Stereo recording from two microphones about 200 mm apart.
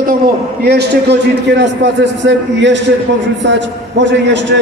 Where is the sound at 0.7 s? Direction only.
55° right (ahead or behind).